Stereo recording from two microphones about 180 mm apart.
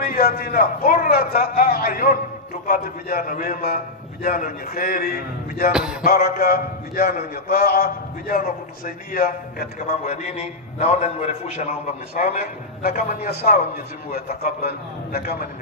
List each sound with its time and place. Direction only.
0.0 s a man's voice: 55° left (ahead or behind)
5.7 s music: 5° right (ahead or behind)
6.0 s a man's voice: 55° left (ahead or behind)
9.8 s a man's voice: 40° left (ahead or behind)
12.2 s a man's voice: 55° left (ahead or behind)